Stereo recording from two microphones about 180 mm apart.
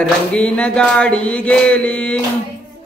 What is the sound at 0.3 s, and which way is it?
Music, 5° left (ahead or behind).